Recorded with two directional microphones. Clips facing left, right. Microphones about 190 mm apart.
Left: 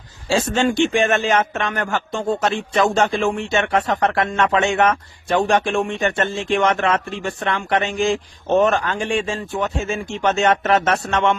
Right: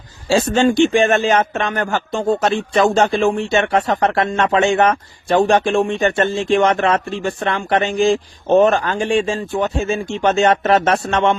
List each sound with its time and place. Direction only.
0.3 s a man's voice: 35° right (ahead or behind)